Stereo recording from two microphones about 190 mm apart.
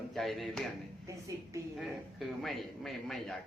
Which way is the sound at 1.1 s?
15° right (ahead or behind).